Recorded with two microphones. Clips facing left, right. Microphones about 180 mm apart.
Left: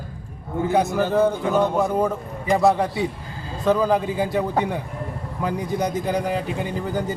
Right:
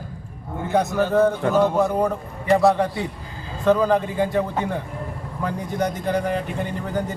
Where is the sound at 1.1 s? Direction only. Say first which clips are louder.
Right 1 dB; centre (ahead or behind).